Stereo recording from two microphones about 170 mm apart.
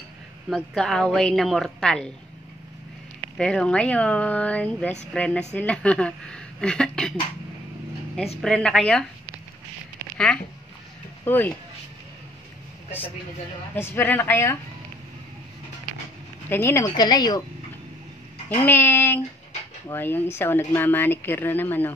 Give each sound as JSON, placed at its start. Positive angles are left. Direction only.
{"t": 0.5, "sound": "speech", "side_deg": 0}
{"t": 3.3, "sound": "speech", "side_deg": 5}
{"t": 8.4, "sound": "speech", "side_deg": 5}
{"t": 10.1, "sound": "speech", "side_deg": 5}
{"t": 13.7, "sound": "speech", "side_deg": 15}
{"t": 16.4, "sound": "speech", "side_deg": 15}
{"t": 18.6, "sound": "speech", "side_deg": 10}